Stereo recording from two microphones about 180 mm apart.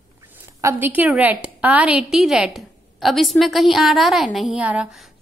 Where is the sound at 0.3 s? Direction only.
15° right (ahead or behind).